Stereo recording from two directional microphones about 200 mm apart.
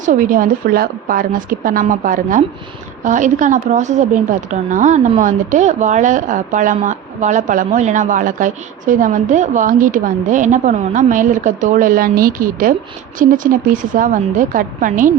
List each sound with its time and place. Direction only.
0.0 s a woman's voice: 40° right (ahead or behind)